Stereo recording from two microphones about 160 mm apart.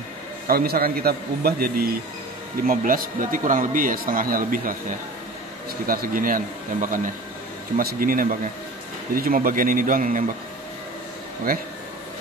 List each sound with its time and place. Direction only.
0.5 s a man's voice: 65° right (ahead or behind)
2.6 s speech: 60° right (ahead or behind)
11.5 s a man's voice: 70° right (ahead or behind)